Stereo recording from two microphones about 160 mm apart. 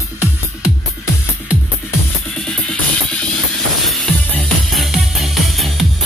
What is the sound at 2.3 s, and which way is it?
Music, 5° left (ahead or behind).